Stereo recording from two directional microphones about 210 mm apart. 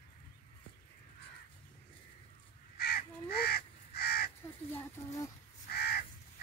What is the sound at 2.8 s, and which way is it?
Crow, 50° left (ahead or behind).